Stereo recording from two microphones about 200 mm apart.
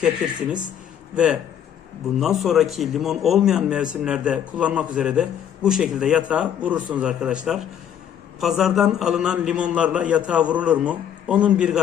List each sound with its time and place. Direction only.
1.1 s a man's voice: 5° right (ahead or behind)